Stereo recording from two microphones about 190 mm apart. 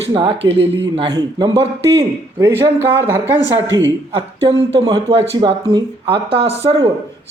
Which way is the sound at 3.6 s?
80° right.